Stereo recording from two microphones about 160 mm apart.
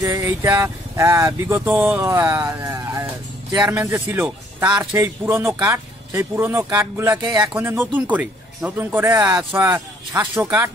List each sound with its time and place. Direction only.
0.0 s speech: 20° right (ahead or behind)